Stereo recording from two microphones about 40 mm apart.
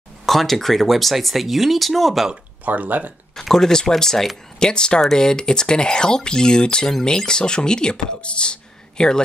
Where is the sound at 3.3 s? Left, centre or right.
Centre.